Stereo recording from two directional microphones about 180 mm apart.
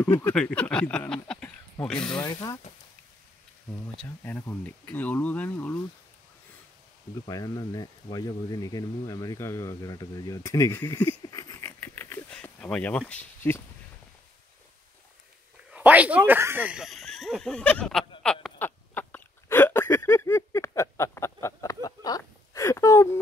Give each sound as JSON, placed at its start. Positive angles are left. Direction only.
{"t": 0.0, "sound": "speech", "side_deg": 10}
{"t": 2.2, "sound": "speech", "side_deg": 20}
{"t": 3.9, "sound": "speech", "side_deg": 5}
{"t": 7.2, "sound": "speech", "side_deg": 20}
{"t": 11.2, "sound": "a sound", "side_deg": 20}
{"t": 13.1, "sound": "speech", "side_deg": 10}
{"t": 15.7, "sound": "speech", "side_deg": -10}
{"t": 18.2, "sound": "a sound", "side_deg": 5}